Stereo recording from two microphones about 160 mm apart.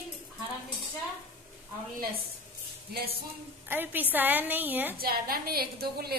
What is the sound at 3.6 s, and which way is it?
A woman's voice, 10° right (ahead or behind).